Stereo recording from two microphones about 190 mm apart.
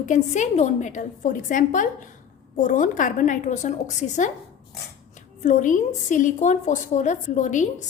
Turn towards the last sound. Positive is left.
turn(degrees=40)  # may be behind; listen again after turning